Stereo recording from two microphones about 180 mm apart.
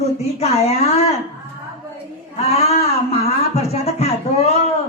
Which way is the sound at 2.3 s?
35° left (ahead or behind).